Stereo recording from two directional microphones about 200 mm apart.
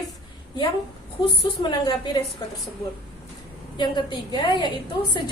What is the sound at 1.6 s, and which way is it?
Speech, 25° left (ahead or behind).